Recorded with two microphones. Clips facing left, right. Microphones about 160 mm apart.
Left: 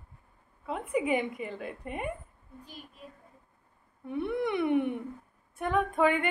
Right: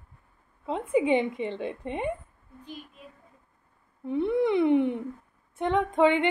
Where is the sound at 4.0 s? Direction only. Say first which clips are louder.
Right 6 dB; 25° right (ahead or behind).